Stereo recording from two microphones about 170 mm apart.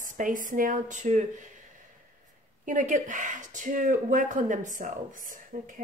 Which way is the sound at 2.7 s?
50° right (ahead or behind).